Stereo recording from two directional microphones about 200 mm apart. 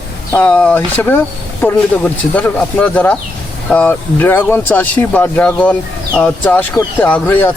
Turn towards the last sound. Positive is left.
turn(degrees=10)  # may be behind; listen again after turning